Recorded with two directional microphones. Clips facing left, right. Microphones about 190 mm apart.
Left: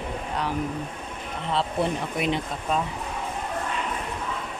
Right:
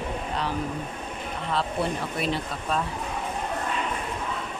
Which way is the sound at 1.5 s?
25° left (ahead or behind).